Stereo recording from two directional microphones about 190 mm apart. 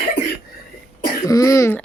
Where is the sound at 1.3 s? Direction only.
20° left (ahead or behind).